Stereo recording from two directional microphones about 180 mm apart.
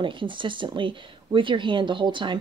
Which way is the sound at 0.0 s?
25° right (ahead or behind).